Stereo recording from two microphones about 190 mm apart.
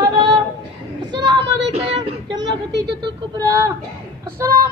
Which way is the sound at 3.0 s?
20° right (ahead or behind).